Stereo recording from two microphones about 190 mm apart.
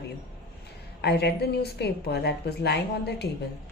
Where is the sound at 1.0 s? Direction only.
60° left (ahead or behind).